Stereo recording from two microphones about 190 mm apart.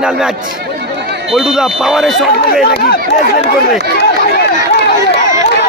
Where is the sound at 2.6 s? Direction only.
55° left (ahead or behind).